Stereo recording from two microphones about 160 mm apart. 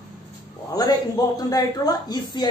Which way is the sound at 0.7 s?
25° left (ahead or behind).